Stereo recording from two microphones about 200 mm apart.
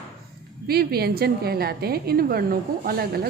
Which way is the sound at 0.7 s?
50° right (ahead or behind).